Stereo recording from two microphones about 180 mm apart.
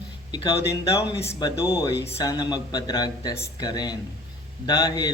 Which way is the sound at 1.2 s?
15° left (ahead or behind).